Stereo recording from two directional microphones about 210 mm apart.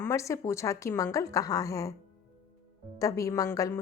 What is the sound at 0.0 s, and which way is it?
A woman's voice, 15° left (ahead or behind).